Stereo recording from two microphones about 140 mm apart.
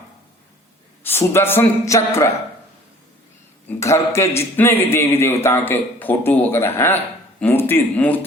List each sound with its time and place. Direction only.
1.3 s speech: 15° left (ahead or behind)
3.7 s speech: 20° left (ahead or behind)